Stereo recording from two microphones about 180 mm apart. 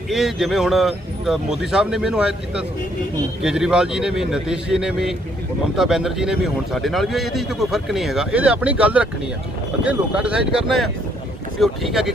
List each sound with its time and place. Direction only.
0.1 s a man's voice: centre (ahead or behind)